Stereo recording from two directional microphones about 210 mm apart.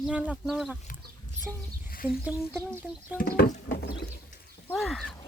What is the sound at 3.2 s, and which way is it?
Speech, 40° left (ahead or behind).